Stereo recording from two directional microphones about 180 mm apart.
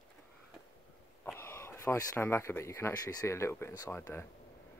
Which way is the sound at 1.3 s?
15° left (ahead or behind).